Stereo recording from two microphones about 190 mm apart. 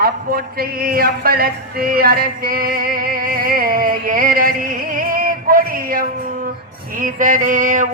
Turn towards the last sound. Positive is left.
turn(degrees=-45)  # may be behind; listen again after turning